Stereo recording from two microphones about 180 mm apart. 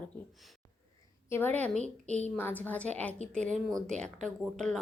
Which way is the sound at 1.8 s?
40° right (ahead or behind).